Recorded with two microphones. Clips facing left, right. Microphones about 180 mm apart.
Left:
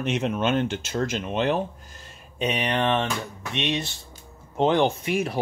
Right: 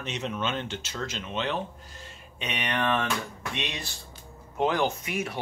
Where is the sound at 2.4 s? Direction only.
35° left (ahead or behind).